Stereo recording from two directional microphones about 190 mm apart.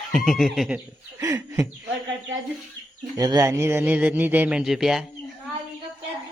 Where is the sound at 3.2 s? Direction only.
20° right (ahead or behind); by 5.0 s centre (ahead or behind).